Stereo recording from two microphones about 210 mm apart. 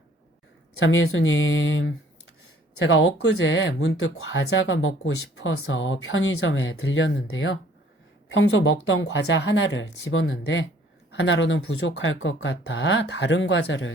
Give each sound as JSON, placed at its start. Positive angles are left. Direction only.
{"t": 0.8, "sound": "speech", "side_deg": 70}